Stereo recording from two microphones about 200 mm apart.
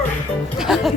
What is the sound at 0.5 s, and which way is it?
Music, centre (ahead or behind).